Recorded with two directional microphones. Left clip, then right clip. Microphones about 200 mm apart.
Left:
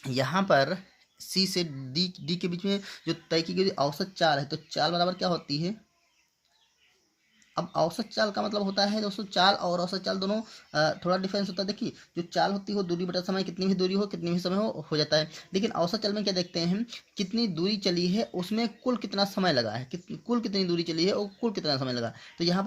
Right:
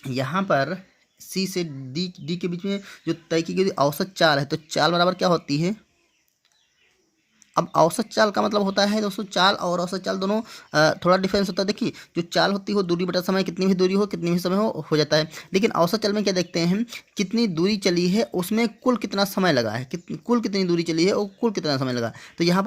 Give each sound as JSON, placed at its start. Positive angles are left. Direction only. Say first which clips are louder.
{"t": 0.0, "sound": "speech", "louder": "right 2 dB", "side_deg": -15}
{"t": 7.5, "sound": "speech", "louder": "right 9 dB", "side_deg": -40}